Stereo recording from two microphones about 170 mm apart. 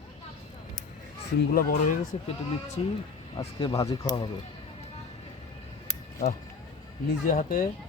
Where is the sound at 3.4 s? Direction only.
20° left (ahead or behind).